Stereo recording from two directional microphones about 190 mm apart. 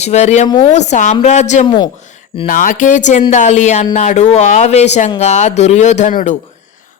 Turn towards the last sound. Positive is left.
turn(degrees=40)  # may be behind; listen again after turning